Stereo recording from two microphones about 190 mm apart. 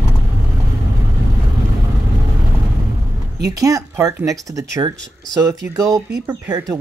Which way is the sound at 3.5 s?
20° right (ahead or behind).